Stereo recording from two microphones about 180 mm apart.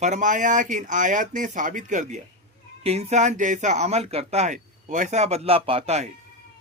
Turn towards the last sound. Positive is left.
turn(degrees=-35)  # may be behind; listen again after turning